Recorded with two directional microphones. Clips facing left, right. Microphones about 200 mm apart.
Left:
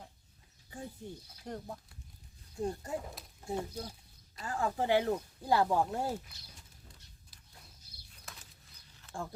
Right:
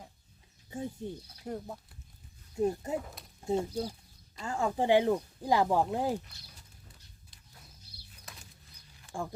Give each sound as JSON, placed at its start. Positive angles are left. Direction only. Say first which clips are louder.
{"t": 0.7, "sound": "speech", "louder": "right 7 dB", "side_deg": -20}
{"t": 1.5, "sound": "speech", "louder": "right 3 dB", "side_deg": -5}
{"t": 2.6, "sound": "speech", "louder": "right 6 dB", "side_deg": -20}
{"t": 9.0, "sound": "a sound", "louder": "right 4 dB", "side_deg": -15}